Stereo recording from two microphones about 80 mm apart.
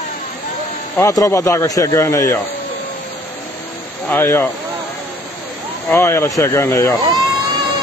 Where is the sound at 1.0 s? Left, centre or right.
Left.